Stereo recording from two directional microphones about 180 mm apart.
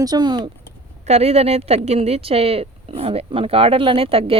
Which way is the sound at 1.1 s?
35° right (ahead or behind).